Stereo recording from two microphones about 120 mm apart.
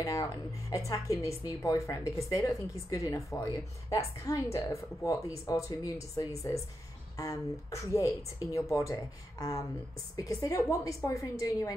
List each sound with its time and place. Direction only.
0.0 s a woman's voice: 25° left (ahead or behind)